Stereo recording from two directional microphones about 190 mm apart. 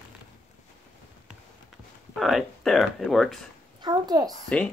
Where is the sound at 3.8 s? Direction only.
20° right (ahead or behind).